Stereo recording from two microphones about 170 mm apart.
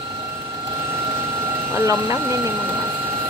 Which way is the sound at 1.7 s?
15° right (ahead or behind).